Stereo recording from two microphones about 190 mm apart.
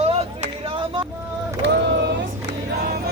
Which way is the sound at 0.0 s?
30° right (ahead or behind).